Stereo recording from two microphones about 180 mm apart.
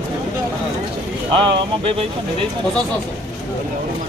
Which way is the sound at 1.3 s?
25° right (ahead or behind).